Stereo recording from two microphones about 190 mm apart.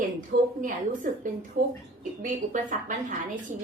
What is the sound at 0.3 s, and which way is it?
Speech, 55° right (ahead or behind).